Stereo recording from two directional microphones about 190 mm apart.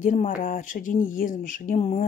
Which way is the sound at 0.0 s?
40° left (ahead or behind).